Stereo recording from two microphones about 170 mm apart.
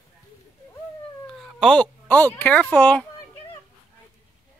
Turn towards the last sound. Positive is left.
turn(degrees=10)  # may be behind; listen again after turning